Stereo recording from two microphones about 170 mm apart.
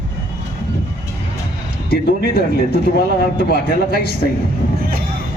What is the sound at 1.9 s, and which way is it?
Speech, 65° left (ahead or behind).